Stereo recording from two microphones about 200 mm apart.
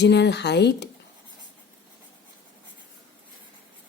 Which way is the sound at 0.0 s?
60° left (ahead or behind).